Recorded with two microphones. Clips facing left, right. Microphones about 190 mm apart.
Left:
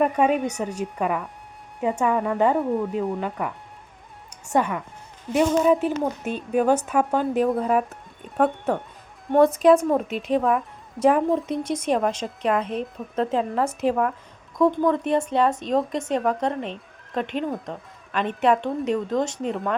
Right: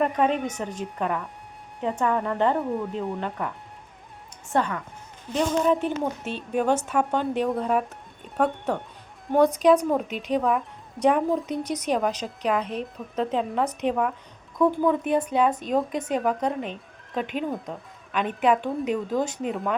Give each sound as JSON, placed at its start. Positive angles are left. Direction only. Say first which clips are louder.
{"t": 0.0, "sound": "a woman's voice", "louder": "left 3 dB", "side_deg": 5}
{"t": 4.5, "sound": "speech", "louder": "left 2 dB", "side_deg": 15}
{"t": 5.3, "sound": "a woman's voice", "louder": "left 4 dB", "side_deg": 5}